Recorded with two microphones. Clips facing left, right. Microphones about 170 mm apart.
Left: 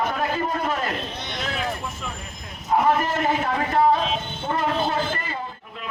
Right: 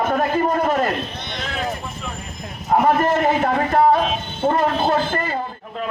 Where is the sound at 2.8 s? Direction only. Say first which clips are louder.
Right 6 dB; 45° right (ahead or behind).